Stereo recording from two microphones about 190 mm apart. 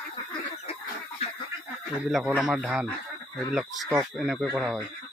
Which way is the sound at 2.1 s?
5° right (ahead or behind).